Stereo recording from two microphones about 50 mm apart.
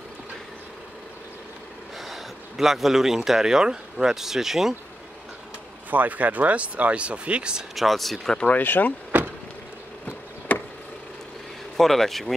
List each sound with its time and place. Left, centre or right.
2.0 s speech: centre
5.9 s speech: right
7.7 s speech: centre
8.5 s speech: left
10.5 s a sound: left
11.7 s speech: centre